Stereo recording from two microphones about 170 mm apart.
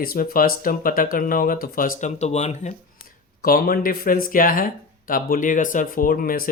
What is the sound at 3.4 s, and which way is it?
Speech, 60° left (ahead or behind).